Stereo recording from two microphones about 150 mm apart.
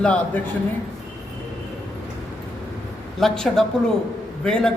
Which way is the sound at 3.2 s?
5° left (ahead or behind).